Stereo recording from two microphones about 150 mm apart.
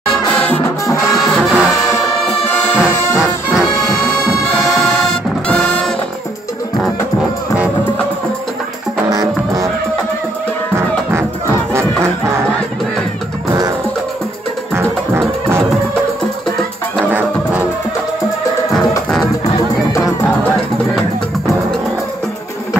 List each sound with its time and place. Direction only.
1.2 s music: centre (ahead or behind)
3.6 s music: 20° left (ahead or behind)
5.5 s music: 5° left (ahead or behind)
9.1 s music: 25° right (ahead or behind)
14.7 s music: 15° right (ahead or behind)
17.1 s music: 10° right (ahead or behind)